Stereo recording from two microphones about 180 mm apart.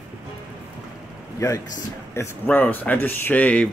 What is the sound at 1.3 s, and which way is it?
A man's voice, 15° left (ahead or behind).